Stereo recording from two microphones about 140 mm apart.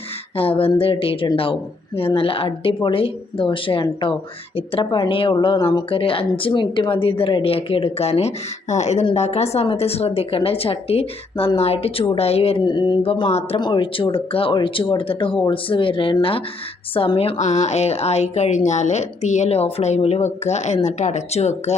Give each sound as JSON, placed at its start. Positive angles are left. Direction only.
{"t": 0.3, "sound": "a woman's voice", "side_deg": 40}
{"t": 17.3, "sound": "a woman's voice", "side_deg": 55}